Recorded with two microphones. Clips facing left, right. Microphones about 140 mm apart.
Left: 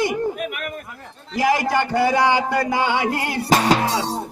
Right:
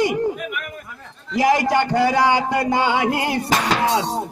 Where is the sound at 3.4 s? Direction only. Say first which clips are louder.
Left 7 dB; 30° left (ahead or behind).